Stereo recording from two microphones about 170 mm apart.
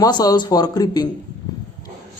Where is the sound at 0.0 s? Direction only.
20° left (ahead or behind).